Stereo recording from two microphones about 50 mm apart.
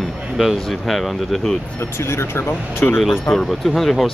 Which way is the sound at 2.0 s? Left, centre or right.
Left.